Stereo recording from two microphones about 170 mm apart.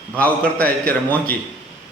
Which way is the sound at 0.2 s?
10° left (ahead or behind).